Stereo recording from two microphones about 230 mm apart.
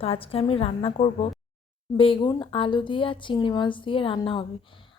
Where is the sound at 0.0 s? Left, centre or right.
Left.